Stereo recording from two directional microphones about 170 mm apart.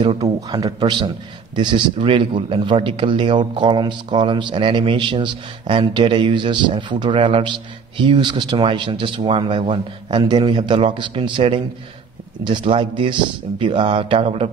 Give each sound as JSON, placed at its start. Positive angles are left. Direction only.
{"t": 0.0, "sound": "a man's voice", "side_deg": -25}